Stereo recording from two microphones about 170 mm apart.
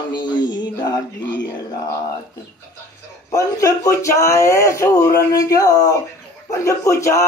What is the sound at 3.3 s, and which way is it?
Speech, 20° left (ahead or behind).